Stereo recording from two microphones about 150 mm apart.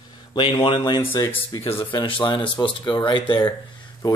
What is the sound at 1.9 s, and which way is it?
Speech, 30° left (ahead or behind).